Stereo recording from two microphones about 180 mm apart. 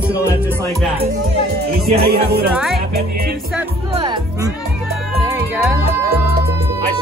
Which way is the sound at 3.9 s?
25° right (ahead or behind).